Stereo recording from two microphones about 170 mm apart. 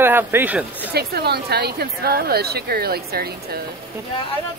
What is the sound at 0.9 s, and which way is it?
Speech, 70° right (ahead or behind).